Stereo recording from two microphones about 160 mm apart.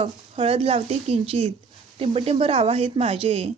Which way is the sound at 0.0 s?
35° right (ahead or behind).